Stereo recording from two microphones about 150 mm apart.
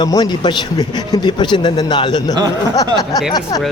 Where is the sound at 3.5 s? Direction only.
30° left (ahead or behind).